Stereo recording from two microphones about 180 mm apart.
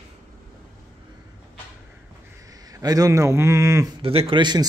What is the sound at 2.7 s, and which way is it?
Speech, 20° right (ahead or behind).